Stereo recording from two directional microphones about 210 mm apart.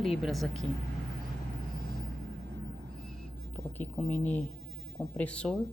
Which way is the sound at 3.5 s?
10° left (ahead or behind).